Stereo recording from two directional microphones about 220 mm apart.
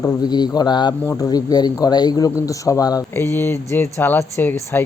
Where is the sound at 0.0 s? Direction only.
15° left (ahead or behind).